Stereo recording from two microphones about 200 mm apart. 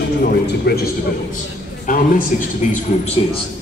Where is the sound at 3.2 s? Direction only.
25° left (ahead or behind).